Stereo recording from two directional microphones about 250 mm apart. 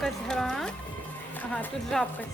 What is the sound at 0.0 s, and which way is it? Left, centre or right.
Music, centre.